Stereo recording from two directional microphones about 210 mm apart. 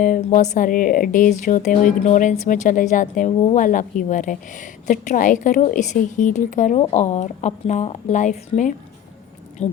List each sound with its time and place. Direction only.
0.0 s speech: 40° left (ahead or behind)